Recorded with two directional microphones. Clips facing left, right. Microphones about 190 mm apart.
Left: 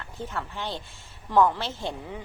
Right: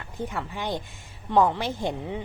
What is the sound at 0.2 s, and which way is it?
A woman's voice, 15° right (ahead or behind).